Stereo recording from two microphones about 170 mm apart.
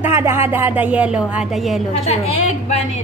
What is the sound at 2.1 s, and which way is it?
Speech, 40° left (ahead or behind).